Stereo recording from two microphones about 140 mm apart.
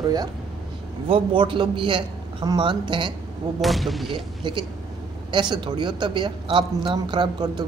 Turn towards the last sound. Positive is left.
turn(degrees=-30)  # may be behind; listen again after turning